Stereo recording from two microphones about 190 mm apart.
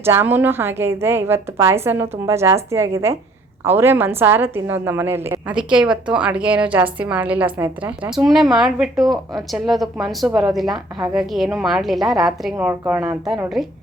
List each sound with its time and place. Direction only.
0.0 s a woman's voice: 10° right (ahead or behind)
12.5 s a woman's voice: 10° right (ahead or behind)